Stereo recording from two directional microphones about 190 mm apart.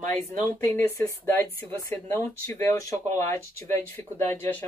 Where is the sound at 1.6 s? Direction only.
10° left (ahead or behind).